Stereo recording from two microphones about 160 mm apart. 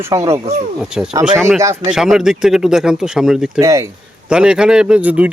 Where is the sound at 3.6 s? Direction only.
20° right (ahead or behind).